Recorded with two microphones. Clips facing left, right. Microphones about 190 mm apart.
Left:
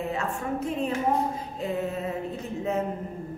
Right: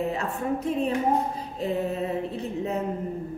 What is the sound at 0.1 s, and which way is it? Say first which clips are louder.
A woman's voice: right 2 dB; 35° right (ahead or behind).